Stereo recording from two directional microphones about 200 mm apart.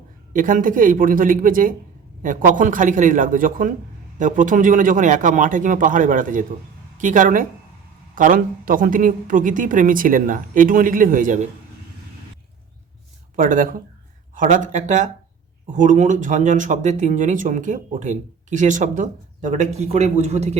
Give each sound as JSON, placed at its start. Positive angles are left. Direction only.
{"t": 0.3, "sound": "a woman's voice", "side_deg": -40}
{"t": 13.3, "sound": "speech", "side_deg": -40}